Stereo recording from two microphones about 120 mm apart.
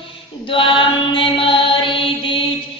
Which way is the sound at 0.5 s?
45° left (ahead or behind).